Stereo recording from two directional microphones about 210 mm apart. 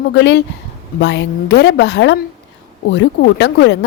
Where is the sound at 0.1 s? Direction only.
55° left (ahead or behind).